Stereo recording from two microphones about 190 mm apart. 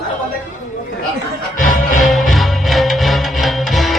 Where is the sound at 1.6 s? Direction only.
40° left (ahead or behind).